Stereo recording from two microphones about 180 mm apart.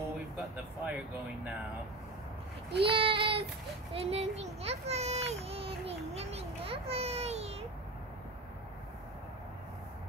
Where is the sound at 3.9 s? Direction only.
35° right (ahead or behind).